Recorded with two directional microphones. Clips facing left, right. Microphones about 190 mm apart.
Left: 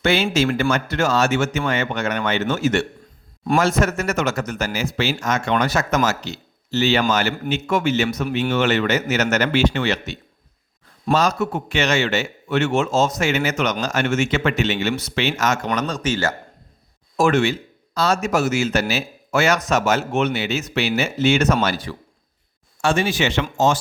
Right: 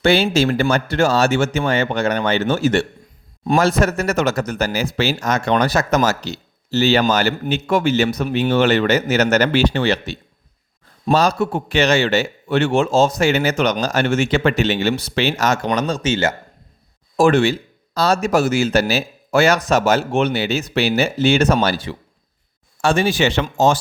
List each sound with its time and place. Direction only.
0.0 s speech: 35° right (ahead or behind)